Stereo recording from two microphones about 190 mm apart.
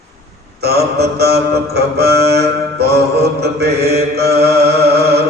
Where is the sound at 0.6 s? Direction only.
55° right (ahead or behind).